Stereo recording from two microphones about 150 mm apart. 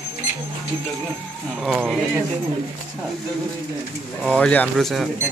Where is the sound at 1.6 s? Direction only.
Centre (ahead or behind).